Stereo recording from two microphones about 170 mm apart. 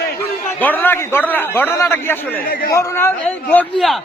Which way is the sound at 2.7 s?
15° left (ahead or behind).